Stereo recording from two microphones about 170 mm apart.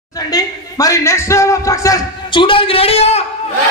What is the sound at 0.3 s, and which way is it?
A man's voice, 20° left (ahead or behind).